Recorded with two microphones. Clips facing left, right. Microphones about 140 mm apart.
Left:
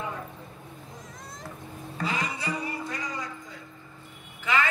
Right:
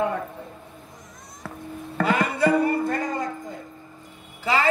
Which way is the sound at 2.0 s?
60° right (ahead or behind).